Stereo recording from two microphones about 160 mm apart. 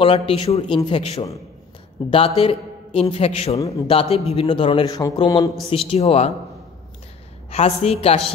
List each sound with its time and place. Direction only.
0.0 s a man's voice: 35° left (ahead or behind)
5.7 s a man's voice: 35° left (ahead or behind)
7.5 s a man's voice: 40° left (ahead or behind)